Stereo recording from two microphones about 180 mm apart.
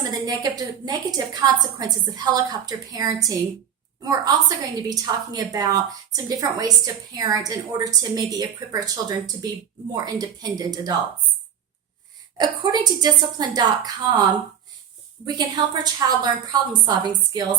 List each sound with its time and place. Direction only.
0.1 s a woman's voice: 20° right (ahead or behind)
12.4 s a woman's voice: 20° right (ahead or behind)
15.4 s a woman's voice: 20° right (ahead or behind)